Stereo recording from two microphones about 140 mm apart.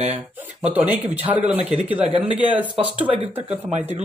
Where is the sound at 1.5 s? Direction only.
50° right (ahead or behind).